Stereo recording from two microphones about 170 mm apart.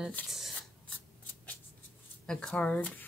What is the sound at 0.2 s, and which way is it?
Speech, 10° left (ahead or behind).